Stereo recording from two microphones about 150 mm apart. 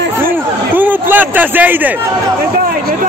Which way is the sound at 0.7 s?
10° right (ahead or behind).